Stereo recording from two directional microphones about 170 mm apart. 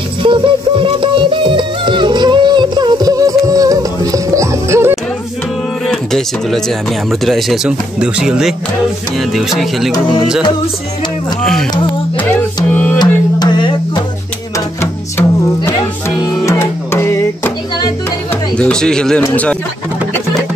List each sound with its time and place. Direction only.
0.2 s music: 30° right (ahead or behind)
5.9 s speech: centre (ahead or behind)
12.7 s music: 10° left (ahead or behind)
13.0 s music: 25° left (ahead or behind)
14.8 s music: 15° left (ahead or behind)
18.6 s speech: 5° left (ahead or behind)